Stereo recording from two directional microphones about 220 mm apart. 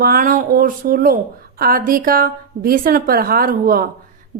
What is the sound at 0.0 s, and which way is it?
Speech, 40° right (ahead or behind).